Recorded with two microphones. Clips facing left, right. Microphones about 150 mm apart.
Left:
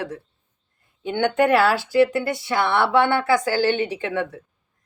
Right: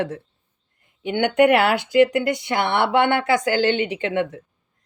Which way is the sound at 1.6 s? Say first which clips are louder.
Right 1 dB; 20° right (ahead or behind).